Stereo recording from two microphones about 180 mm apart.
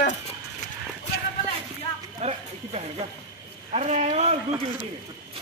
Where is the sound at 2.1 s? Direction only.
35° right (ahead or behind).